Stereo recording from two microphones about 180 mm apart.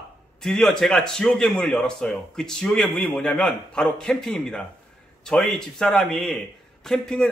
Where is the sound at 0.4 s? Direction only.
5° left (ahead or behind).